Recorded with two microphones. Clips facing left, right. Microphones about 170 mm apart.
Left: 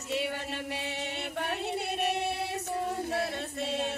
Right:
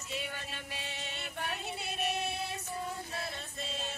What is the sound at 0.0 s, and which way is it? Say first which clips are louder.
Music: left 8 dB; 70° left (ahead or behind).